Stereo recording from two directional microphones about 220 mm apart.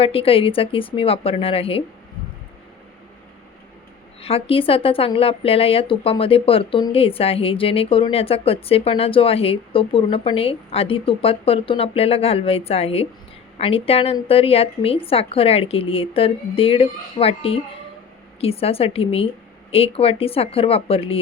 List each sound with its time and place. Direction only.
0.0 s speech: 25° left (ahead or behind)
4.2 s speech: 25° left (ahead or behind)